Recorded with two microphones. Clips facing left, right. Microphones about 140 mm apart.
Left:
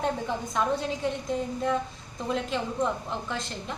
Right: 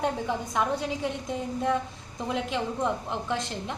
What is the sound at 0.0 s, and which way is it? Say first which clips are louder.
A woman's voice: right 1 dB; 15° right (ahead or behind).